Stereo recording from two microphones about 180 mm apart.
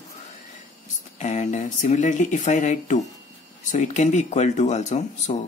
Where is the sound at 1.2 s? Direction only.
40° left (ahead or behind).